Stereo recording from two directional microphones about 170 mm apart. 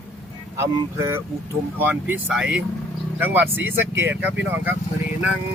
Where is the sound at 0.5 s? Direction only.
15° right (ahead or behind).